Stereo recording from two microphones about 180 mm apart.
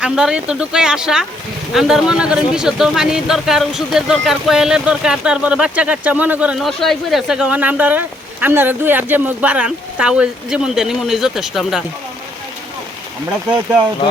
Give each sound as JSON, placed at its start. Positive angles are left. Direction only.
{"t": 0.0, "sound": "speech", "side_deg": -5}